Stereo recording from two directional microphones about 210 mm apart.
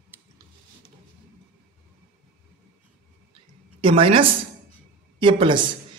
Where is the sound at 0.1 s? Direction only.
10° right (ahead or behind).